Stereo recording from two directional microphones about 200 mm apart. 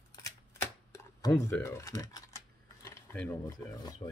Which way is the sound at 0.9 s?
15° left (ahead or behind).